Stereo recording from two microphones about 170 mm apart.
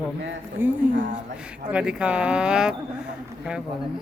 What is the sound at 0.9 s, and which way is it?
Speech, 50° right (ahead or behind).